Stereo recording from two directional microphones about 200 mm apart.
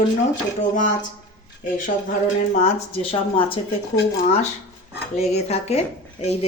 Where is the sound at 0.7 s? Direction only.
40° left (ahead or behind).